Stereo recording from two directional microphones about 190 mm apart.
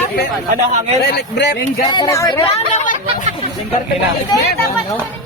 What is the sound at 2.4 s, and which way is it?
Speech, 35° left (ahead or behind).